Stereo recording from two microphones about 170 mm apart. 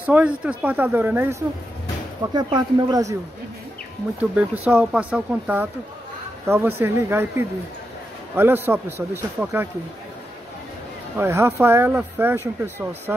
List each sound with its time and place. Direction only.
0.0 s speech: 10° right (ahead or behind)
2.3 s speech: 25° right (ahead or behind)
4.2 s speech: 10° right (ahead or behind)
11.1 s speech: 15° right (ahead or behind)